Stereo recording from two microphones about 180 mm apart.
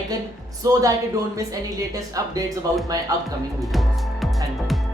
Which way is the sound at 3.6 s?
Centre (ahead or behind).